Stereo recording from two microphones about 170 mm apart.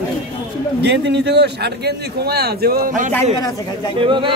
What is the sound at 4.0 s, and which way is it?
Speech, 30° right (ahead or behind).